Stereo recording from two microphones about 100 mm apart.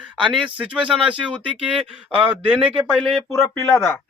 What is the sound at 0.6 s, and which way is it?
Speech, 10° right (ahead or behind).